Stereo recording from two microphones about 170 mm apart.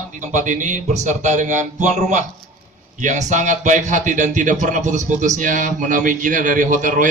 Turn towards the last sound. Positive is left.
turn(degrees=-50)  # may be behind; listen again after turning